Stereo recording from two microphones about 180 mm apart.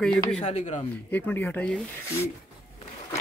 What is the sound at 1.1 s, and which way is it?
Speech, 10° left (ahead or behind).